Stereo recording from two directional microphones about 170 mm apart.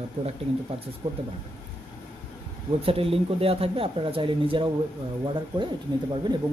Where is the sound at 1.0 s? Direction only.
25° right (ahead or behind).